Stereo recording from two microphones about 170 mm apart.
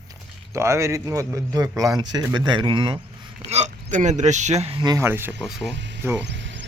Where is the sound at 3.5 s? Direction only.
45° right (ahead or behind); by 5.7 s 5° right (ahead or behind).